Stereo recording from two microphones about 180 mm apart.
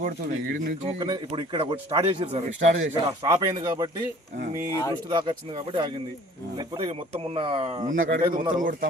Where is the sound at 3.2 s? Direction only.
20° right (ahead or behind).